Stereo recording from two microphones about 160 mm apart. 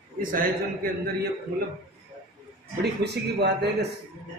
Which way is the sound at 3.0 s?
90° right.